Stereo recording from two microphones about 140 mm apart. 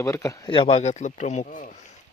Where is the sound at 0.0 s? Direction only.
20° left (ahead or behind).